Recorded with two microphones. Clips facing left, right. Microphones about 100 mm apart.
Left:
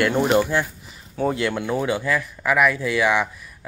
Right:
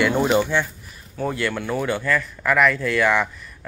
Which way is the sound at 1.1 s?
25° left (ahead or behind).